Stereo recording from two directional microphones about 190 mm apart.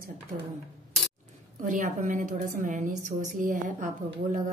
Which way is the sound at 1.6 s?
40° right (ahead or behind).